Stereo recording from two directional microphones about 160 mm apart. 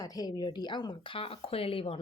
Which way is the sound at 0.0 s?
25° left (ahead or behind).